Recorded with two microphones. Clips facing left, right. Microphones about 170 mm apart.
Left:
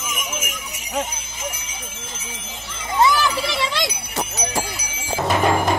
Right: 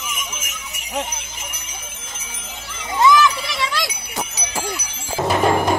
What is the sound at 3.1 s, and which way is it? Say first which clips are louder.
Children playing: right 3 dB; 30° left (ahead or behind).